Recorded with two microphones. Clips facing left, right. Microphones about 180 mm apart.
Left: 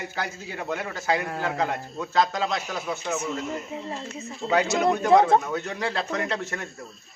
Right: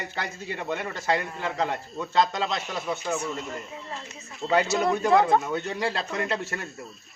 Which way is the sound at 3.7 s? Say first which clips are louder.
Left 6 dB; 25° left (ahead or behind).